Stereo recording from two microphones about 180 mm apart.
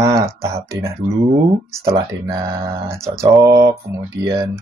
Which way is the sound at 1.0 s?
40° right (ahead or behind).